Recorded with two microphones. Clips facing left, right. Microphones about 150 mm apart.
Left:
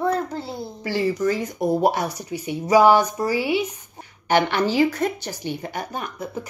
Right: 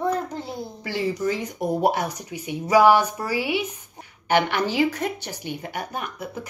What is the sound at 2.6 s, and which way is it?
Speech, 15° left (ahead or behind).